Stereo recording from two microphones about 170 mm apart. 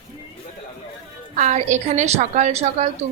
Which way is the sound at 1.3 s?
45° right (ahead or behind).